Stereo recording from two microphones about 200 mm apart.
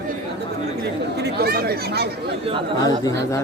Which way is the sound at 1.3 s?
50° right (ahead or behind).